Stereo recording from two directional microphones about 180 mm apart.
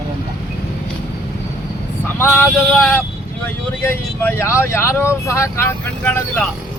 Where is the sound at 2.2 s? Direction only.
10° left (ahead or behind).